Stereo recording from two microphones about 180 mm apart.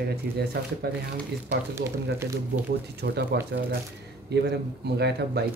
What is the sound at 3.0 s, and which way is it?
Speech, 65° right (ahead or behind).